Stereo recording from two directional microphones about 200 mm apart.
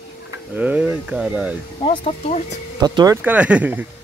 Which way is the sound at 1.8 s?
30° left (ahead or behind).